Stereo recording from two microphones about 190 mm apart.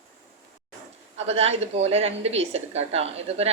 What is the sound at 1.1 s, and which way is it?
A woman's voice, 35° right (ahead or behind).